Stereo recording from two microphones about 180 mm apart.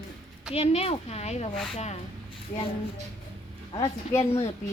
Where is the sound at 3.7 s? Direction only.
20° left (ahead or behind).